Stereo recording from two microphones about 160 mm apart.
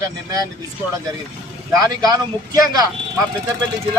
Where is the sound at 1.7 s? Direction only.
20° right (ahead or behind).